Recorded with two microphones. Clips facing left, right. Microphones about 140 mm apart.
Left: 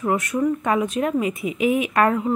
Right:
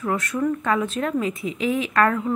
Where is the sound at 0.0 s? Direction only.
20° left (ahead or behind).